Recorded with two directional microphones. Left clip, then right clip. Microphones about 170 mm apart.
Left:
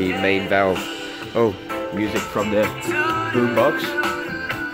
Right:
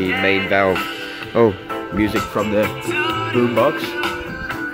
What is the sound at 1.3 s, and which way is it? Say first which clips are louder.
Speech: right 4 dB; 20° right (ahead or behind).